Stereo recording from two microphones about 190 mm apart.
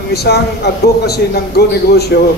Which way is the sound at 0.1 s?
60° left (ahead or behind).